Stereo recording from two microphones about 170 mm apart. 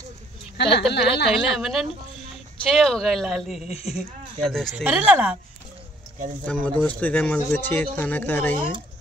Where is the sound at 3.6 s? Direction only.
35° left (ahead or behind).